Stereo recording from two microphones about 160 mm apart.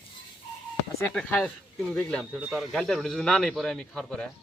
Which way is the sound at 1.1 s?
5° left (ahead or behind).